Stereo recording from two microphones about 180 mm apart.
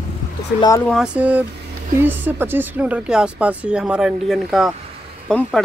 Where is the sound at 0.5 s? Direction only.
20° left (ahead or behind).